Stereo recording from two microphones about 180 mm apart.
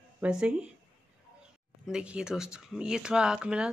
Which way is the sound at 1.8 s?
5° right (ahead or behind).